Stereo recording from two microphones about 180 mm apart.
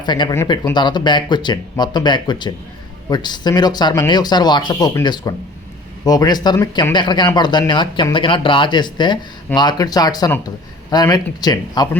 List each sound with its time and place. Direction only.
0.0 s speech: 25° left (ahead or behind)